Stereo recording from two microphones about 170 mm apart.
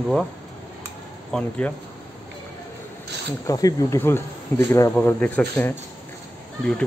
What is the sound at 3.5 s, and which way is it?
Speech, 20° left (ahead or behind).